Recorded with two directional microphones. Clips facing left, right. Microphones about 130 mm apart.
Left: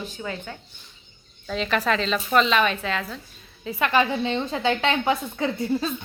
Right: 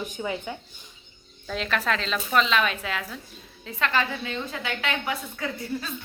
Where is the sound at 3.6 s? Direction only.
15° left (ahead or behind).